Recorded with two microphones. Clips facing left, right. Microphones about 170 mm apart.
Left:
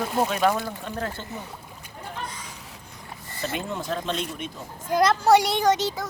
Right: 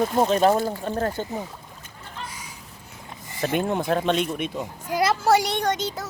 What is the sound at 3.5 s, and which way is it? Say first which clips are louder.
Speech: right 7 dB; 55° right (ahead or behind).